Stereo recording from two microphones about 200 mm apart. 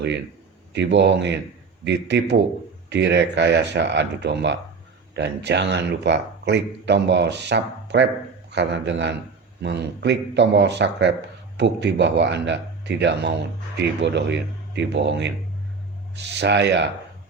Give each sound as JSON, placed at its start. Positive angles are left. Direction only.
{"t": 0.7, "sound": "speech", "side_deg": -60}